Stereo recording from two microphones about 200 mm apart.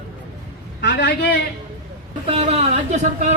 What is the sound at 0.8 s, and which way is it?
Speech, 55° left (ahead or behind).